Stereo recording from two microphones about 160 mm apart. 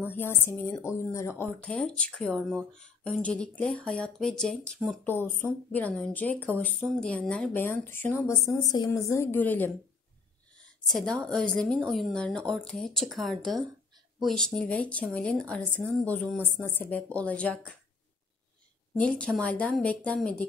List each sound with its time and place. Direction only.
0.0 s a woman's voice: 15° left (ahead or behind)
1.7 s a woman's voice: 5° left (ahead or behind)
5.0 s a woman's voice: 10° left (ahead or behind)
8.6 s a woman's voice: 25° left (ahead or behind); by 17.7 s 10° left (ahead or behind)
18.9 s a woman's voice: 5° left (ahead or behind)